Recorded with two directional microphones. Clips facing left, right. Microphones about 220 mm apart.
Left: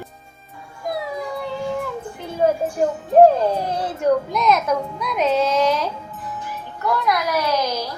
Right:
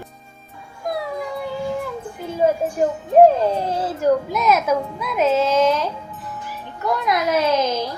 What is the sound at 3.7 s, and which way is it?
A child's voice, 5° right (ahead or behind).